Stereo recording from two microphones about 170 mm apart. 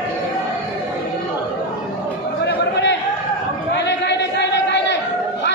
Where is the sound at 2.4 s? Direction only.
85° left.